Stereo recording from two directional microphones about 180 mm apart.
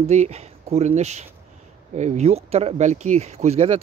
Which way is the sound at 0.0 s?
40° right (ahead or behind).